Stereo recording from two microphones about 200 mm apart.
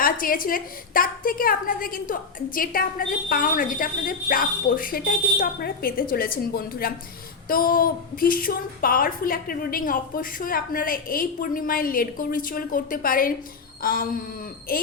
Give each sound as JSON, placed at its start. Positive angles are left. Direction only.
{"t": 0.0, "sound": "a woman's voice", "side_deg": 45}